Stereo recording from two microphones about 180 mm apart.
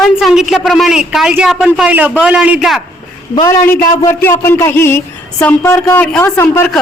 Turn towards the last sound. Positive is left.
turn(degrees=10)  # may be behind; listen again after turning